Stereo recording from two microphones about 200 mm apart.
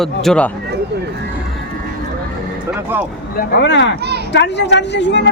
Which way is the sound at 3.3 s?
60° left (ahead or behind).